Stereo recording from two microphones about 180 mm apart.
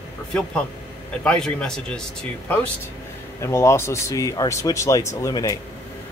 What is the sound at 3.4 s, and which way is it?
Speech, 15° left (ahead or behind).